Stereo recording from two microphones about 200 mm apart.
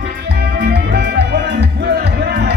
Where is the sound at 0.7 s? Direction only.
55° right (ahead or behind).